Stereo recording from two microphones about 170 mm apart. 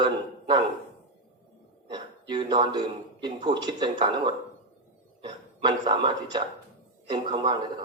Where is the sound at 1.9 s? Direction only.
25° right (ahead or behind).